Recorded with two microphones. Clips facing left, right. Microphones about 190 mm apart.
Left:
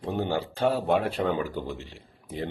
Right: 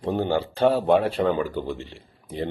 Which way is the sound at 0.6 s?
5° left (ahead or behind).